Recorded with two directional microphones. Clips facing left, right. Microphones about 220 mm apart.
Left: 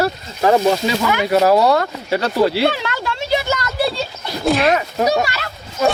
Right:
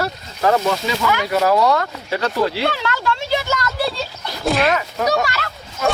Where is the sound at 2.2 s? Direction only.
5° left (ahead or behind).